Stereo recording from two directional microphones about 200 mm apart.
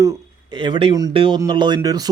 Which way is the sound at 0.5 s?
25° right (ahead or behind).